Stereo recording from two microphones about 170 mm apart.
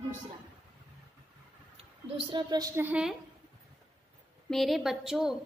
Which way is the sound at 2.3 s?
25° right (ahead or behind).